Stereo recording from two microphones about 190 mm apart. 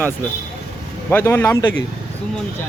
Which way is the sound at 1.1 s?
10° left (ahead or behind).